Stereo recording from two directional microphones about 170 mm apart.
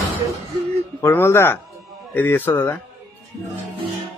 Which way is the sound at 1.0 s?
15° left (ahead or behind).